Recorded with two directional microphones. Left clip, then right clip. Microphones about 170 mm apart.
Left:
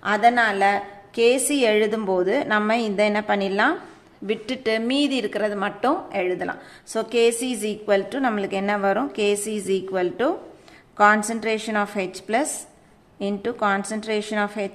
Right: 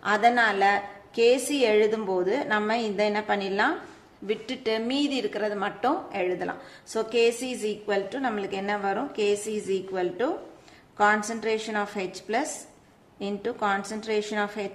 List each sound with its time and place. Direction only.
0.0 s a woman's voice: 15° left (ahead or behind)